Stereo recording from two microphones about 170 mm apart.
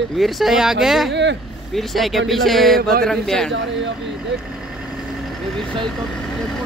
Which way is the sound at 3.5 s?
90° right.